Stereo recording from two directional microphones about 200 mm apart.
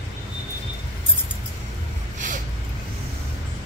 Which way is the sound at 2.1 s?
40° right (ahead or behind).